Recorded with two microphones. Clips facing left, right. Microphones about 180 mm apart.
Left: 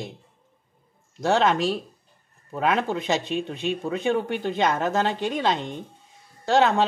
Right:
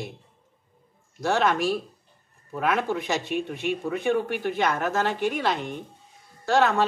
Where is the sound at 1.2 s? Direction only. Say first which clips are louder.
Left 2 dB; 20° left (ahead or behind).